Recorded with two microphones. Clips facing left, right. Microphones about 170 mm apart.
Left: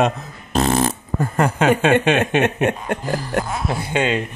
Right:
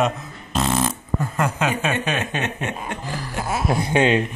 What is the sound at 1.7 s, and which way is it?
Speech, 65° left (ahead or behind).